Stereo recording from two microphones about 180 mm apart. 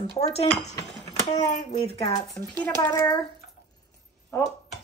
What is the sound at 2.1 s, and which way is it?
A child's voice, 20° left (ahead or behind).